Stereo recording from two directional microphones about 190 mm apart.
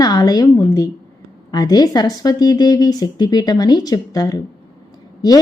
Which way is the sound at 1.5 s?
20° left (ahead or behind).